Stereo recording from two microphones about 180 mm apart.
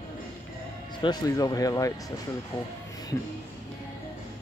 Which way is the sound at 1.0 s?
20° left (ahead or behind).